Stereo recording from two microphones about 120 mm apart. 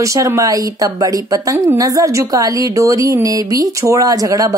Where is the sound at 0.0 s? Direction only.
25° right (ahead or behind).